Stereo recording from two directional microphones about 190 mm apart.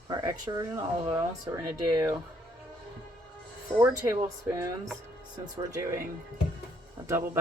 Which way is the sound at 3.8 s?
15° right (ahead or behind).